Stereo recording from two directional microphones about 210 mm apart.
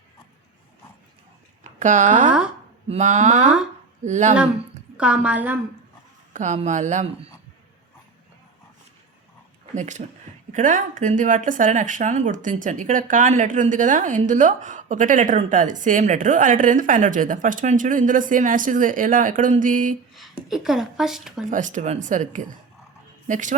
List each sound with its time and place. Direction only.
1.6 s speech: 35° right (ahead or behind)
4.9 s speech: 5° right (ahead or behind)
6.3 s speech: 35° right (ahead or behind)
9.7 s speech: 35° right (ahead or behind)
20.5 s speech: centre (ahead or behind)
21.5 s speech: 35° right (ahead or behind)